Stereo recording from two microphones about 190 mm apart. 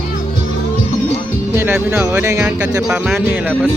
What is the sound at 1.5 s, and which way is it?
Speech, 10° right (ahead or behind).